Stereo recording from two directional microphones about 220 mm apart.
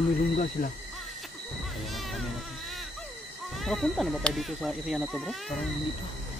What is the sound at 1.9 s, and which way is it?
Music, centre (ahead or behind).